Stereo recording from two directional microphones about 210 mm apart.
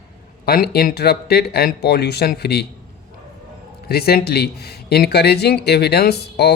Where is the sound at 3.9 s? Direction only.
50° left (ahead or behind).